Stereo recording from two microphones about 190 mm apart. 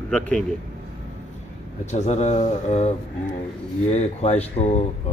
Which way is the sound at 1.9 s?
35° left (ahead or behind).